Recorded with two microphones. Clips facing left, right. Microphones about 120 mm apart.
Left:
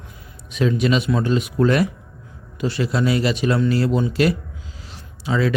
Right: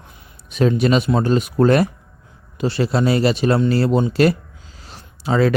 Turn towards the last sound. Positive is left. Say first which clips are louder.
# right 4 dB
turn(degrees=-45)  # may be behind; listen again after turning